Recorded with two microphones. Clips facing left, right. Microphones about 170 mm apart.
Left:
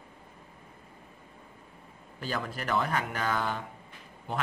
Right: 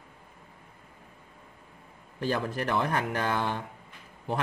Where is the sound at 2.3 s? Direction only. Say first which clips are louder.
Right 2 dB; 30° right (ahead or behind).